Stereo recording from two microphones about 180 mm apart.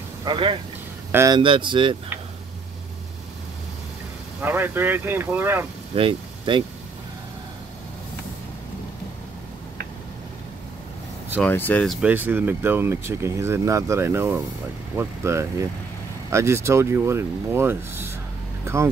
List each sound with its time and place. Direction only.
0.2 s speech: 25° right (ahead or behind)
1.4 s speech: 25° right (ahead or behind)
4.4 s speech: 10° right (ahead or behind)
5.9 s speech: 30° right (ahead or behind)
11.4 s speech: 10° left (ahead or behind)
12.1 s speech: 10° right (ahead or behind)